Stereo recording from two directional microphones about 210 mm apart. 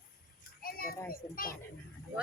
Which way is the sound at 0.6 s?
45° left (ahead or behind).